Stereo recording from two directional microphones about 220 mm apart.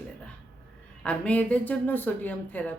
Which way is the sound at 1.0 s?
5° left (ahead or behind).